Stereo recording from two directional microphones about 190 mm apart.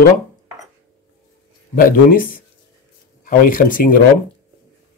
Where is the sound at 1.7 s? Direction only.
50° left (ahead or behind).